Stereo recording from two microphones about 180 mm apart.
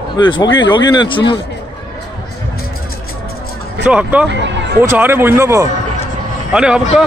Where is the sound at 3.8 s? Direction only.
10° right (ahead or behind).